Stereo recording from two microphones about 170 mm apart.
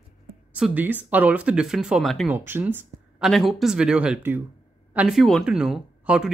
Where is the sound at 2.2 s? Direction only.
15° right (ahead or behind).